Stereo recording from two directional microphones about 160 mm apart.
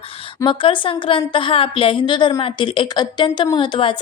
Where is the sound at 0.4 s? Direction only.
30° left (ahead or behind).